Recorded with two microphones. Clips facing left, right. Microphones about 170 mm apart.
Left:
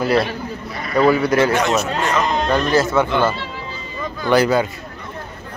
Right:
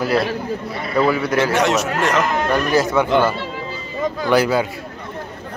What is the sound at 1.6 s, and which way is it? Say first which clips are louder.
Speech: right 1 dB; 85° right.